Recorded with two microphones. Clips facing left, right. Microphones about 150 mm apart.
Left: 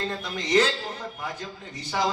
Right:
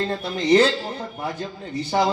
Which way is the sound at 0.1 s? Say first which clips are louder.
Right 7 dB; 30° right (ahead or behind).